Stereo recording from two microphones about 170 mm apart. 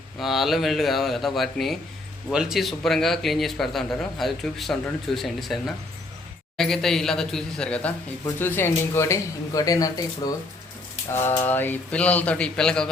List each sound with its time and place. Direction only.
0.2 s a man's voice: centre (ahead or behind)